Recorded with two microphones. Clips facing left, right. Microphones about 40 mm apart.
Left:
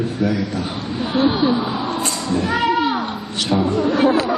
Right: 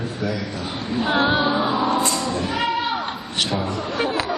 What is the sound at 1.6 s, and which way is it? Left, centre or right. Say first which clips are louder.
Music: right 2 dB; right.